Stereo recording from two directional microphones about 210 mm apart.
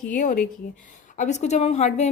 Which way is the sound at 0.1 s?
40° left (ahead or behind).